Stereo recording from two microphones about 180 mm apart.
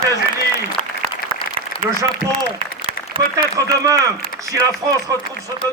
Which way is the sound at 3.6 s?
20° right (ahead or behind).